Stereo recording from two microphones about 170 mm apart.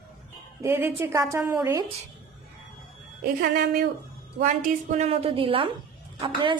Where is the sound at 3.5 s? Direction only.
60° right (ahead or behind).